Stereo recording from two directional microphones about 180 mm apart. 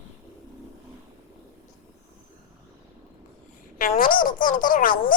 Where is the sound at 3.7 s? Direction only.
50° left (ahead or behind).